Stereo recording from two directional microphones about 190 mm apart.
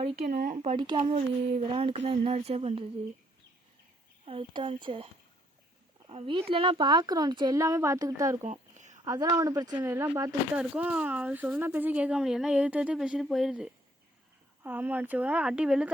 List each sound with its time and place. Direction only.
0.0 s speech: 35° right (ahead or behind)
4.3 s speech: 25° right (ahead or behind)
6.1 s speech: 25° right (ahead or behind)
8.7 s a sound: 40° right (ahead or behind)
9.0 s speech: 20° right (ahead or behind)
10.6 s speech: 5° right (ahead or behind)